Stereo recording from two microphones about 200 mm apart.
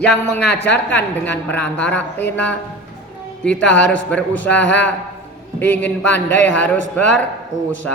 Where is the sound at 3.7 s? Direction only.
70° left (ahead or behind).